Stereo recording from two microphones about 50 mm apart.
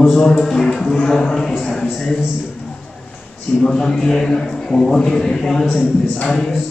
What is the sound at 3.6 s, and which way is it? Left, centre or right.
A man's voice, centre.